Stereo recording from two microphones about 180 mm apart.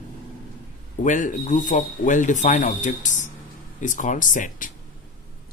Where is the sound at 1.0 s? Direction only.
45° left (ahead or behind).